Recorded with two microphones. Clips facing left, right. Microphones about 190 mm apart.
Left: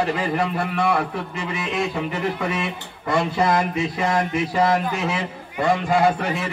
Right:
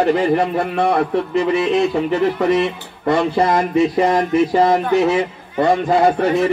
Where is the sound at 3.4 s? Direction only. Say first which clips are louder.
Right 6 dB; 35° right (ahead or behind).